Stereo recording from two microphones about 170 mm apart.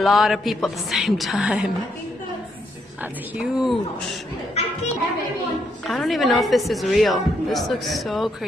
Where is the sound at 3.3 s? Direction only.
5° right (ahead or behind).